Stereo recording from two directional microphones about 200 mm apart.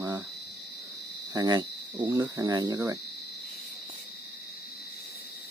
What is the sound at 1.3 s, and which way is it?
Speech, 20° right (ahead or behind).